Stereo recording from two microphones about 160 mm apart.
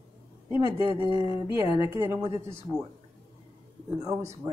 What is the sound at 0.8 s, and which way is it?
Speech, 30° left (ahead or behind).